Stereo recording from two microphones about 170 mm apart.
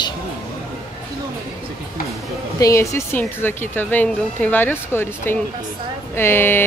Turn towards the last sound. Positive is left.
turn(degrees=10)  # may be behind; listen again after turning